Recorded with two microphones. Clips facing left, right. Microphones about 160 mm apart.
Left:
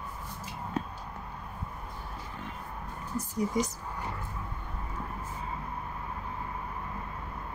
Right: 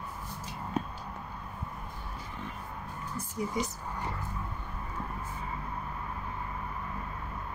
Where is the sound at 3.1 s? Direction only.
45° left (ahead or behind).